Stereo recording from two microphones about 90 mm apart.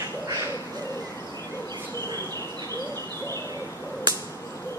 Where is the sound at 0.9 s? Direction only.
30° left (ahead or behind).